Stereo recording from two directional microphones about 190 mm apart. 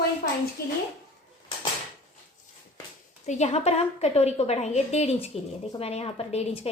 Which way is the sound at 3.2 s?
35° left (ahead or behind).